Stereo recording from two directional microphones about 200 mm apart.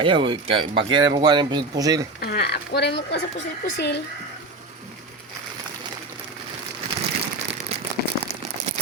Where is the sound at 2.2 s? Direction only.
55° left (ahead or behind).